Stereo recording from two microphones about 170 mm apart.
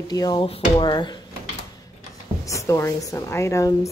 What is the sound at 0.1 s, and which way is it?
Speech, 25° left (ahead or behind).